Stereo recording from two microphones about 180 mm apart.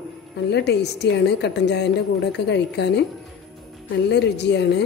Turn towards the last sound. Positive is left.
turn(degrees=70)  # may be behind; listen again after turning